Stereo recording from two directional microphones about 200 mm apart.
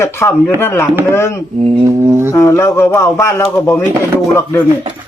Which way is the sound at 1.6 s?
25° right (ahead or behind).